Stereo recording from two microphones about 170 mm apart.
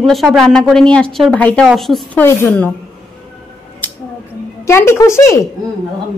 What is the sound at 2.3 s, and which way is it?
Speech, 10° left (ahead or behind).